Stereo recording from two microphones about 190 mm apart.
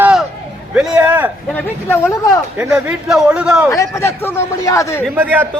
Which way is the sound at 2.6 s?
5° right (ahead or behind).